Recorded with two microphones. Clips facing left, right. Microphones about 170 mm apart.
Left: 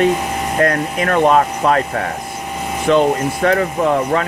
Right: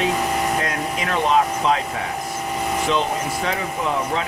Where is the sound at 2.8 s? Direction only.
55° left (ahead or behind).